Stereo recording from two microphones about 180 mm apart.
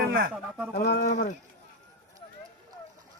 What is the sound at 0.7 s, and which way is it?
Speech, 65° left (ahead or behind).